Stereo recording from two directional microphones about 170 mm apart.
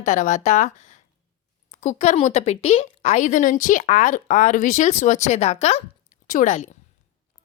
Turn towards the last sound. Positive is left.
turn(degrees=45)  # may be behind; listen again after turning